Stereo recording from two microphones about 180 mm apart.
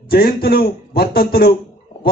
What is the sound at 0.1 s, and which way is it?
Speech, 55° left (ahead or behind).